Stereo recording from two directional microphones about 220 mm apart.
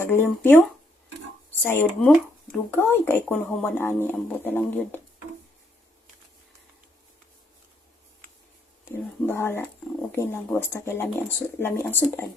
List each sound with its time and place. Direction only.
0.0 s speech: 10° left (ahead or behind)
8.8 s speech: 10° left (ahead or behind)